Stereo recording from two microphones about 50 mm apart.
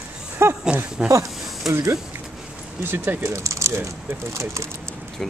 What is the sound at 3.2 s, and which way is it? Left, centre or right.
Speech, right.